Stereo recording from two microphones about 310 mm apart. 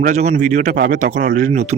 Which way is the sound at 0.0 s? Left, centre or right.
Right.